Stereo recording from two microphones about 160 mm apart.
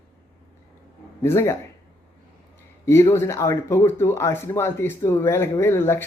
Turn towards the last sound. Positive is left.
turn(degrees=15)  # may be behind; listen again after turning